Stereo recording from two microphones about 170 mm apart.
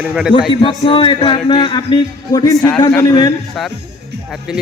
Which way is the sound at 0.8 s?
30° left (ahead or behind).